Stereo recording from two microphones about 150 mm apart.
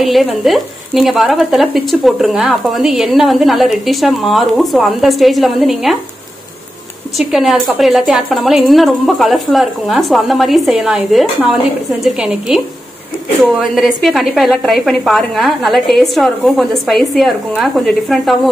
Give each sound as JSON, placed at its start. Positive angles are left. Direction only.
{"t": 0.0, "sound": "speech", "side_deg": 0}
{"t": 7.2, "sound": "speech", "side_deg": 0}